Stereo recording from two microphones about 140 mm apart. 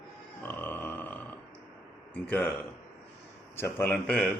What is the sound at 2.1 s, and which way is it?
Speech, 10° left (ahead or behind).